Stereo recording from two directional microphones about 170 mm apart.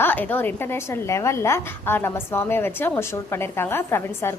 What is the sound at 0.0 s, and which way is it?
Speech, 10° left (ahead or behind).